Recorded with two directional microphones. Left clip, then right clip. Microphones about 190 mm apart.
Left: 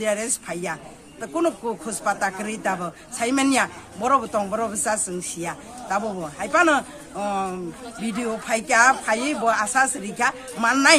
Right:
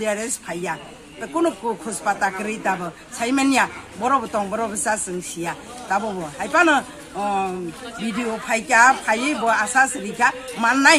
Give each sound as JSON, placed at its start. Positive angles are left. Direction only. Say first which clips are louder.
{"t": 0.0, "sound": "speech", "louder": "even", "side_deg": 20}
{"t": 8.5, "sound": "speech", "louder": "right 3 dB", "side_deg": 20}